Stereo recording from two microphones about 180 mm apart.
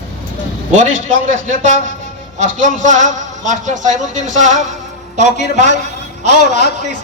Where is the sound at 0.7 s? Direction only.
45° right (ahead or behind).